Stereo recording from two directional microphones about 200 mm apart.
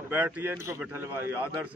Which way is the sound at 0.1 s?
10° right (ahead or behind).